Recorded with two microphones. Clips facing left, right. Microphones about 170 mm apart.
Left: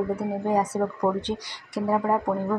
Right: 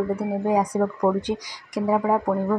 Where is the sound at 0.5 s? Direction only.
10° right (ahead or behind).